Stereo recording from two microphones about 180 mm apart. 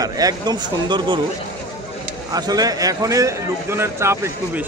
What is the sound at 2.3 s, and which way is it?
A man's voice, 20° right (ahead or behind).